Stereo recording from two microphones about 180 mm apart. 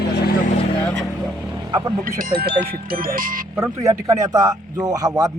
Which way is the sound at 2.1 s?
55° right (ahead or behind).